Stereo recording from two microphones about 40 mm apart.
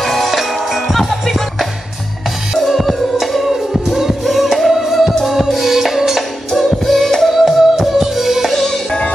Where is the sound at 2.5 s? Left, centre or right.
Centre.